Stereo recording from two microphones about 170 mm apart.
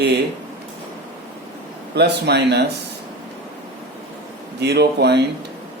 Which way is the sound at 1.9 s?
75° right (ahead or behind).